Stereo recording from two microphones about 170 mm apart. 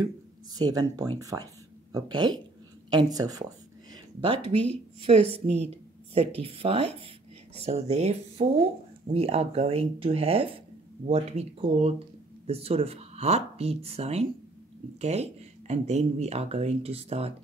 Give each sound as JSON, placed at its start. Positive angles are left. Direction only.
{"t": 0.6, "sound": "a woman's voice", "side_deg": -20}
{"t": 4.5, "sound": "speech", "side_deg": -35}